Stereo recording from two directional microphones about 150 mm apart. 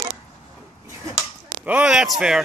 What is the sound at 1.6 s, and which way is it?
Speech, 10° right (ahead or behind).